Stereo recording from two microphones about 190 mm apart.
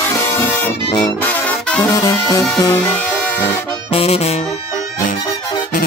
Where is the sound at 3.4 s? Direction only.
30° left (ahead or behind).